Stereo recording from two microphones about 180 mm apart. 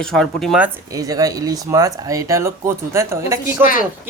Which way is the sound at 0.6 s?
20° right (ahead or behind).